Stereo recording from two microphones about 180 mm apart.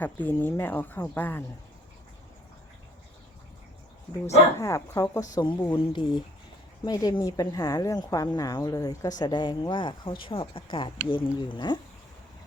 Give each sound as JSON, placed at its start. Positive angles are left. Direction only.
{"t": 0.0, "sound": "speech", "side_deg": 10}
{"t": 4.6, "sound": "a woman's voice", "side_deg": 15}